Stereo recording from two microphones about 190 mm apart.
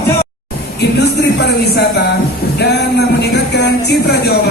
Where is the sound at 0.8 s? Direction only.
60° left (ahead or behind).